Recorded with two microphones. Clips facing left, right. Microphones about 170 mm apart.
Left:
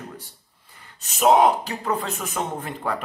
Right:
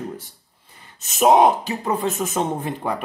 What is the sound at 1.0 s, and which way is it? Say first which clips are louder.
Speech: right 2 dB; 20° right (ahead or behind).